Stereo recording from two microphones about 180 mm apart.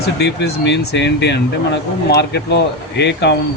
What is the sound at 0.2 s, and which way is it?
Speech, 75° left (ahead or behind).